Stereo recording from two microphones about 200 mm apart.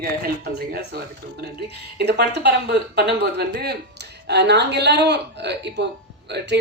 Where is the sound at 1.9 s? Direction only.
55° right (ahead or behind).